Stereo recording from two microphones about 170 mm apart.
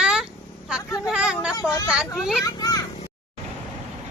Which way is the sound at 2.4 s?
20° left (ahead or behind).